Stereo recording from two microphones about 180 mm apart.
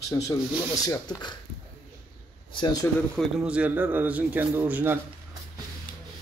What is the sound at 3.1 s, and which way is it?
A man's voice, 5° right (ahead or behind).